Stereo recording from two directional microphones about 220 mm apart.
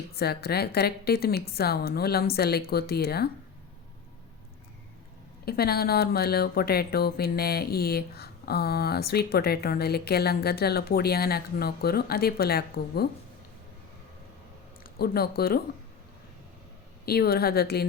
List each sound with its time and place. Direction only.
0.2 s speech: 45° left (ahead or behind)
5.5 s speech: 45° left (ahead or behind)
14.8 s speech: 45° left (ahead or behind)
17.1 s speech: 45° left (ahead or behind)